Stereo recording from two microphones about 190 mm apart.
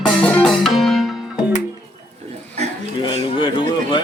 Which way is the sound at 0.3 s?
5° left (ahead or behind).